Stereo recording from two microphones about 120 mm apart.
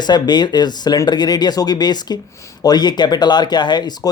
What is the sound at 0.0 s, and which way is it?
Speech, 35° left (ahead or behind).